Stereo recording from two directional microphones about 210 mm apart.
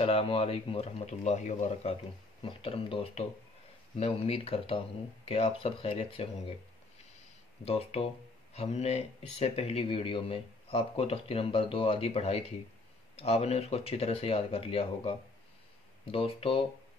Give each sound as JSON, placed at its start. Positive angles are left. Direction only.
{"t": 0.0, "sound": "speech", "side_deg": 25}
{"t": 7.6, "sound": "speech", "side_deg": 30}